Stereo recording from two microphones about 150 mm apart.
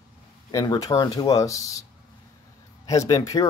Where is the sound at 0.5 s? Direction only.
25° left (ahead or behind).